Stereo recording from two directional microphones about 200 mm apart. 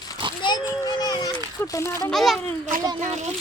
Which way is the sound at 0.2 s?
25° right (ahead or behind).